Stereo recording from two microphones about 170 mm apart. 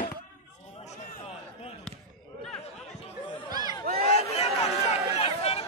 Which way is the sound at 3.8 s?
60° right (ahead or behind).